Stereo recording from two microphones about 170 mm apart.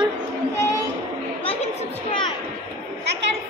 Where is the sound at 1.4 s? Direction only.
35° left (ahead or behind).